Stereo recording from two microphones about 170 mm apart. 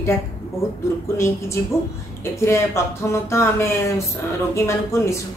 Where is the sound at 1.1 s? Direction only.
15° left (ahead or behind).